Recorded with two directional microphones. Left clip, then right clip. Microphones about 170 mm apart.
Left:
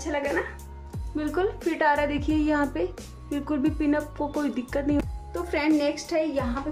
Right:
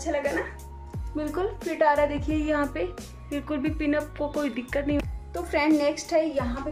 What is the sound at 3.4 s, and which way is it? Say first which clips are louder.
A woman's voice: left 2 dB; 20° left (ahead or behind).